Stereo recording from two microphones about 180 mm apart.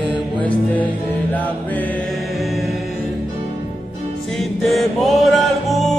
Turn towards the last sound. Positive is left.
turn(degrees=0)  # may be behind; listen again after turning